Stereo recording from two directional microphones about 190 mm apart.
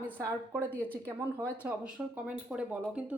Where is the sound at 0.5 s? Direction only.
10° right (ahead or behind).